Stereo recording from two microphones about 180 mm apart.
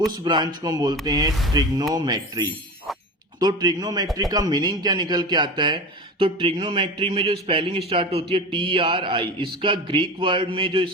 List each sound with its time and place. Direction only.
0.3 s a man's voice: 25° right (ahead or behind)